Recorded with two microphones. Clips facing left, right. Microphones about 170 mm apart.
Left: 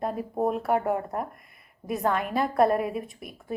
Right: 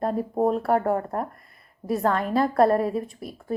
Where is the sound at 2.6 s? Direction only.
30° right (ahead or behind).